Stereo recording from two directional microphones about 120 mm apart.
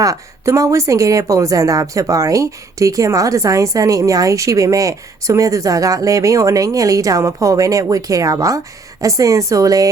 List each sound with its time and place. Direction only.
0.0 s speech: 25° right (ahead or behind)